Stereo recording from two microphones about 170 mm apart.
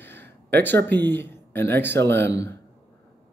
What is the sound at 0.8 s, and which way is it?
Speech, 10° left (ahead or behind).